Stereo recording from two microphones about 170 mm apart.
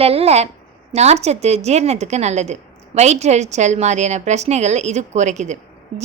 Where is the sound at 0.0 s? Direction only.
35° right (ahead or behind).